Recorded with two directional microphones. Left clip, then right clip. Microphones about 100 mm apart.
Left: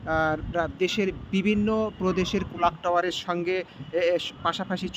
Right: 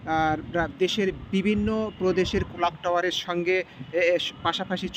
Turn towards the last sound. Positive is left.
turn(degrees=10)  # may be behind; listen again after turning